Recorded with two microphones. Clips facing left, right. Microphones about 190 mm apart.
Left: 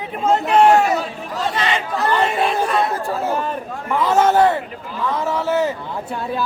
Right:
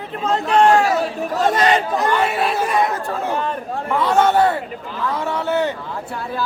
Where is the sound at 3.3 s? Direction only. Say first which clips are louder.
Even; 5° left (ahead or behind).